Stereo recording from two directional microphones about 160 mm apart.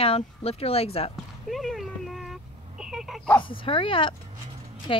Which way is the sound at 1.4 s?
Centre (ahead or behind).